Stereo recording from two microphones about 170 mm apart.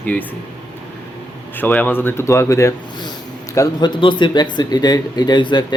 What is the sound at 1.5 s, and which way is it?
Speech, 10° left (ahead or behind).